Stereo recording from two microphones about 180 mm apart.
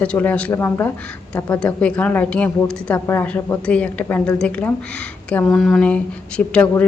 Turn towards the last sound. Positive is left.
turn(degrees=5)  # may be behind; listen again after turning